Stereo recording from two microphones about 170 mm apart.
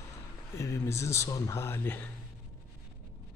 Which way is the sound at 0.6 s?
15° left (ahead or behind).